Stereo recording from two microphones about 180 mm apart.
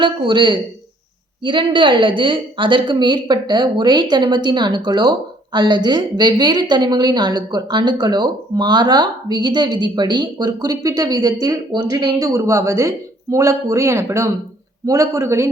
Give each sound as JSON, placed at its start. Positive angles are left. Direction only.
{"t": 0.0, "sound": "a woman's voice", "side_deg": -25}